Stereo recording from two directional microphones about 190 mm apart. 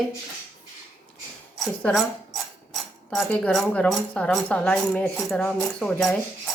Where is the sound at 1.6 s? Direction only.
5° left (ahead or behind).